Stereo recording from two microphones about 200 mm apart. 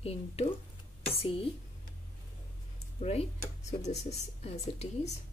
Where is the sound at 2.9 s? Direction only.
30° left (ahead or behind).